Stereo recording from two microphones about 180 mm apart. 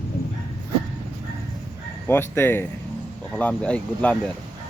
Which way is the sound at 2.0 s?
15° left (ahead or behind).